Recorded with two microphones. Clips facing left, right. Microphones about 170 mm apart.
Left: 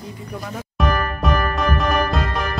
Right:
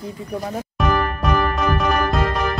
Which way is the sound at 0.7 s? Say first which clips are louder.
Right 1 dB; centre (ahead or behind).